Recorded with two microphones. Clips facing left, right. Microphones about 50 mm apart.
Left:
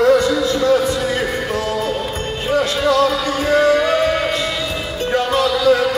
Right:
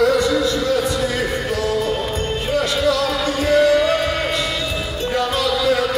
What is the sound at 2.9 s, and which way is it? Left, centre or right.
Music, left.